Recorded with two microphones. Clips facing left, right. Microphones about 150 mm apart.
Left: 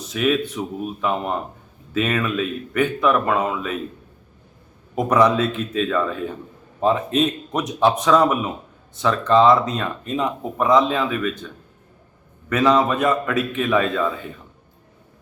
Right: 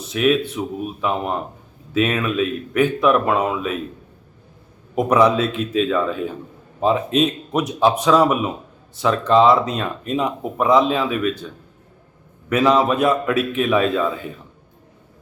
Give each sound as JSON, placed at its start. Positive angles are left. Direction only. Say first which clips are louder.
{"t": 0.1, "sound": "speech", "louder": "right 3 dB", "side_deg": -5}
{"t": 4.9, "sound": "speech", "louder": "right 1 dB", "side_deg": -10}
{"t": 12.5, "sound": "speech", "louder": "right 1 dB", "side_deg": -10}